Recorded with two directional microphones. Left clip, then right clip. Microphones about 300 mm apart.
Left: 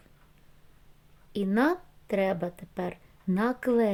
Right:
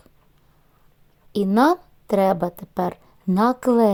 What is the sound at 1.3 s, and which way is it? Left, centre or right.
A woman's voice, centre.